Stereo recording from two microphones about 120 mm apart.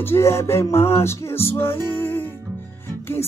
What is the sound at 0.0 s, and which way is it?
Music, 20° left (ahead or behind).